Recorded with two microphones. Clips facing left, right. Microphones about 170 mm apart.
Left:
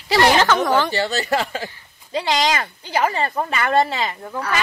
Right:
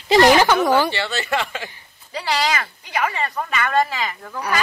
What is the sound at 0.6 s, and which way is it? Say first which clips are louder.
Speech: right 1 dB; 10° right (ahead or behind).